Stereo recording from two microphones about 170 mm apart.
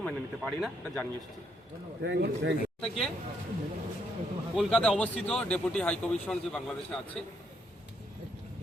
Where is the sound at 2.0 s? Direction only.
75° right (ahead or behind).